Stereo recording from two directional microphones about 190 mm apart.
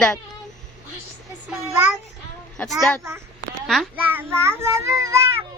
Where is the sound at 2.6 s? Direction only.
Centre (ahead or behind).